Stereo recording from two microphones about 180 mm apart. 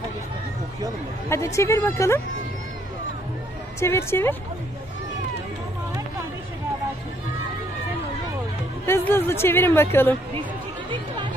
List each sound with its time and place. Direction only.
1.3 s speech: 15° left (ahead or behind)
3.8 s speech: 15° left (ahead or behind)
8.8 s speech: 15° left (ahead or behind)